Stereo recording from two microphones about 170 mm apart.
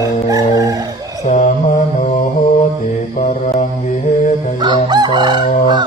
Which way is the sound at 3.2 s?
50° left (ahead or behind).